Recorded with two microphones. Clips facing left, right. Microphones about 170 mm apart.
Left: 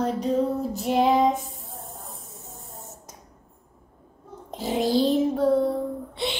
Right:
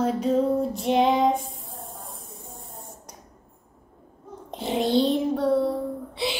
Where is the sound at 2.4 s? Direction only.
25° left (ahead or behind).